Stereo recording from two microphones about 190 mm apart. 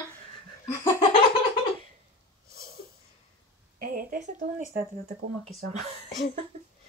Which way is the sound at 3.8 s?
50° right (ahead or behind).